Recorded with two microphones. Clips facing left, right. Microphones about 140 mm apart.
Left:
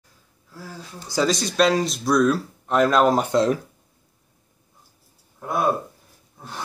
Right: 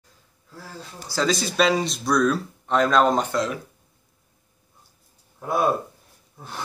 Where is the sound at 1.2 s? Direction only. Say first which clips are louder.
Left 1 dB; centre (ahead or behind).